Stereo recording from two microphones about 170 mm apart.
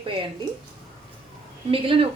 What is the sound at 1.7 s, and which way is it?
Speech, 30° right (ahead or behind).